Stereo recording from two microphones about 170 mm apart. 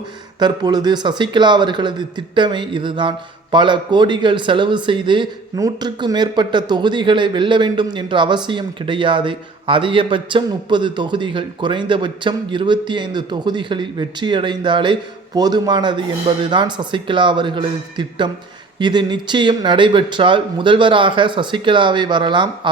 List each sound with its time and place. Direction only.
0.3 s a man's voice: 25° right (ahead or behind)